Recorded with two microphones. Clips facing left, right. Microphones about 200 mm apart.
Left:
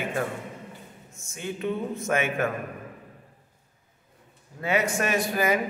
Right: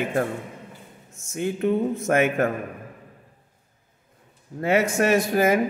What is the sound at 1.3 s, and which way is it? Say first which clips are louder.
Speech: right 7 dB; 50° right (ahead or behind).